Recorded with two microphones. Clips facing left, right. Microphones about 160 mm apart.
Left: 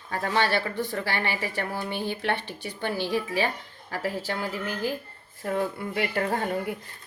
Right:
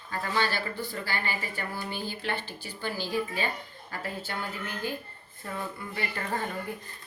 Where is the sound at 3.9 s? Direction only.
90° left.